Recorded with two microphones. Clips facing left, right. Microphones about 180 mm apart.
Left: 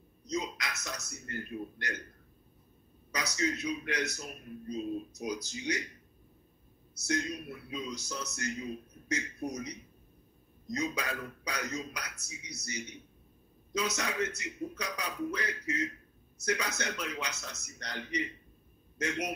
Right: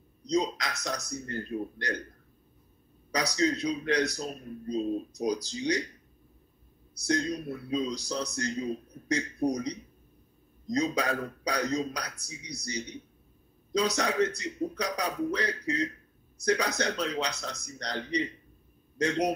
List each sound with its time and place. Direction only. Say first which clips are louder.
0.3 s speech: right 7 dB; 35° right (ahead or behind)
3.3 s speech: right 5 dB; 35° right (ahead or behind)
7.1 s speech: right 5 dB; 35° right (ahead or behind)